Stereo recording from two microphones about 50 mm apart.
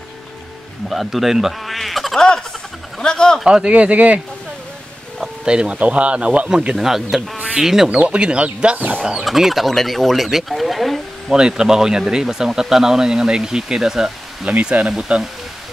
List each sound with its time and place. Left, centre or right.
0.8 s speech: centre
2.1 s speech: centre
3.4 s speech: centre
5.4 s speech: centre
8.0 s speech: right
9.0 s speech: centre
11.3 s speech: centre
14.5 s speech: right